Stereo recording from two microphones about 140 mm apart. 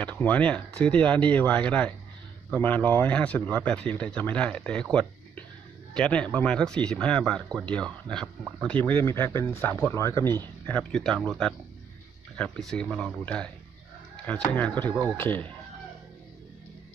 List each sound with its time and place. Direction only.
0.0 s speech: 10° left (ahead or behind)
5.9 s speech: 5° left (ahead or behind)
10.7 s speech: 5° left (ahead or behind)
12.5 s speech: 5° left (ahead or behind)